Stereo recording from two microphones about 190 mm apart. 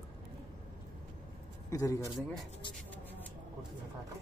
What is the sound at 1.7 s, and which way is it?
Speech, 15° left (ahead or behind).